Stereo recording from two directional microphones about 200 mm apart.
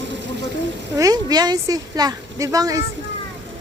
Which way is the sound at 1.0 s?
20° right (ahead or behind).